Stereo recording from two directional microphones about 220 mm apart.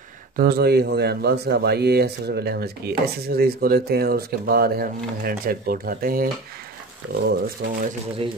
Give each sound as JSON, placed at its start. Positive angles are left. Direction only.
{"t": 0.4, "sound": "a man's voice", "side_deg": -45}